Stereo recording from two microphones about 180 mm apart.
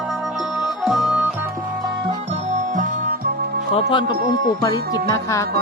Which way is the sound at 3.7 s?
30° left (ahead or behind).